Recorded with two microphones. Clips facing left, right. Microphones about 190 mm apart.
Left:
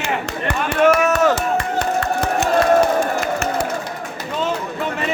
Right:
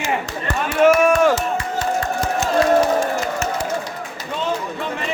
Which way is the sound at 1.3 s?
60° left (ahead or behind).